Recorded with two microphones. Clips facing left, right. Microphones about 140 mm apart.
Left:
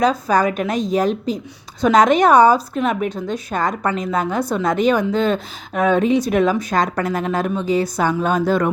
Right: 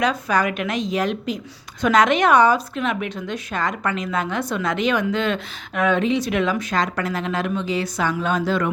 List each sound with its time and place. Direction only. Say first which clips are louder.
0.0 s a woman's voice: left 4 dB; 40° left (ahead or behind)